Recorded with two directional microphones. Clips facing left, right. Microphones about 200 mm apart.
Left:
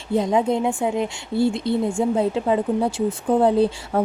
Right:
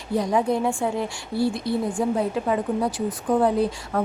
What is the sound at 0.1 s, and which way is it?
A woman's voice, 25° left (ahead or behind).